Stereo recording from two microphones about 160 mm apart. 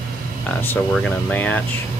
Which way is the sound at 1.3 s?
10° left (ahead or behind).